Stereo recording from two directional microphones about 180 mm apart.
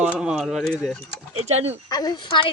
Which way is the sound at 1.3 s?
35° right (ahead or behind).